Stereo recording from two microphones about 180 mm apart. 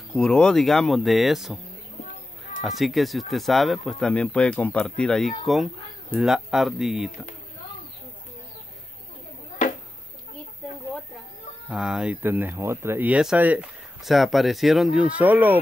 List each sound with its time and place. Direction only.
0.1 s speech: 5° left (ahead or behind)
2.6 s speech: centre (ahead or behind)
9.6 s a sound: 45° left (ahead or behind)
11.7 s speech: 5° right (ahead or behind)